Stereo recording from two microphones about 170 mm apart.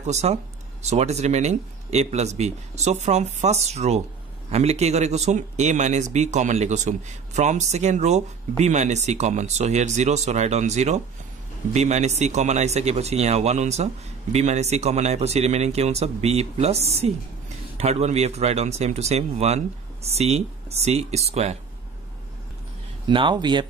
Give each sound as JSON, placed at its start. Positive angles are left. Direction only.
{"t": 0.0, "sound": "speech", "side_deg": -40}
{"t": 23.0, "sound": "speech", "side_deg": -30}